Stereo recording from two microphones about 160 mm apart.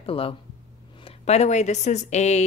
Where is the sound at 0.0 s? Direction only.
35° left (ahead or behind).